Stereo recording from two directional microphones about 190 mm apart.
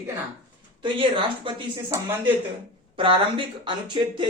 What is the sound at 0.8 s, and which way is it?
Speech, 25° right (ahead or behind).